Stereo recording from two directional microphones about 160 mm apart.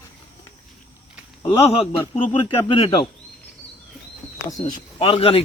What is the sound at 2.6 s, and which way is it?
Speech, 35° left (ahead or behind).